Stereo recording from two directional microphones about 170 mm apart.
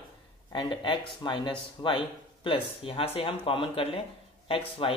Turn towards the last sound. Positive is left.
turn(degrees=35)  # may be behind; listen again after turning